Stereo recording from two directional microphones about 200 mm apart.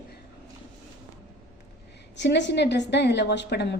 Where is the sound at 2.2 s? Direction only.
60° left (ahead or behind).